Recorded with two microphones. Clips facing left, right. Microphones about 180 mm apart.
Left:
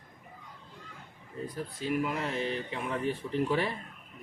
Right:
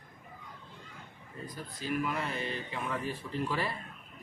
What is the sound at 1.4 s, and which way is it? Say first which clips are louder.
Speech: left 5 dB; 75° left (ahead or behind).